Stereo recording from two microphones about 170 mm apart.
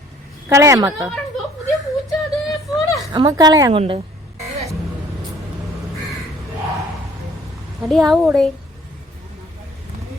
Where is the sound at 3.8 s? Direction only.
35° right (ahead or behind).